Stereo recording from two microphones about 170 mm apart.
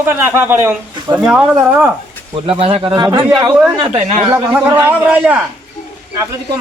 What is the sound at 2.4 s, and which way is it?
Speech, 35° right (ahead or behind).